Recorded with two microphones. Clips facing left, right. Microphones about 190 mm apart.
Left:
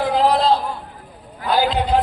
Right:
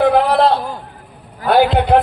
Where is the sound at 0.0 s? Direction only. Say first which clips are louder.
Right 5 dB; 60° right (ahead or behind).